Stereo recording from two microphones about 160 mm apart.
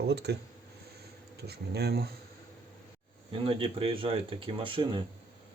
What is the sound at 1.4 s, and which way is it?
Speech, 85° right.